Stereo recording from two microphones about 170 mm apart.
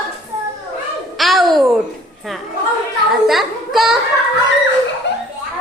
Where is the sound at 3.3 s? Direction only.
Centre (ahead or behind).